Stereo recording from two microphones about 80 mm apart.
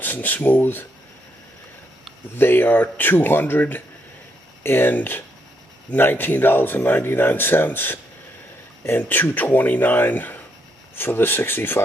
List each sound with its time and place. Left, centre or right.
0.0 s speech: left
2.3 s speech: left
9.0 s speech: left